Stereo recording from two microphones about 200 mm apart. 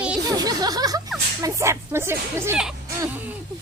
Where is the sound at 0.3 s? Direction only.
20° right (ahead or behind).